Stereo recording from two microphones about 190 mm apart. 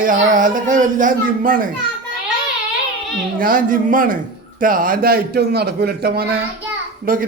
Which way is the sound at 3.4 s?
45° right (ahead or behind).